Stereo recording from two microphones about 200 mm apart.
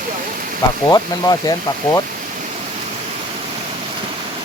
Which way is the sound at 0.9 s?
20° left (ahead or behind).